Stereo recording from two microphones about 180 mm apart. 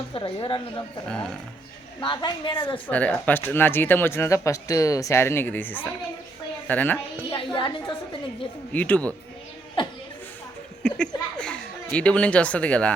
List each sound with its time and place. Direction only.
0.1 s a woman's voice: 30° left (ahead or behind)
1.0 s speech: 5° left (ahead or behind)
2.0 s a woman's voice: 25° left (ahead or behind)
2.8 s speech: 10° left (ahead or behind)
7.3 s a woman's voice: 25° left (ahead or behind)
8.7 s speech: 10° left (ahead or behind)
10.8 s speech: 5° left (ahead or behind)